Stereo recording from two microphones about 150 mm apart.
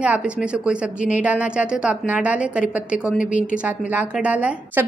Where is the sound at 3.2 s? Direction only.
55° left (ahead or behind).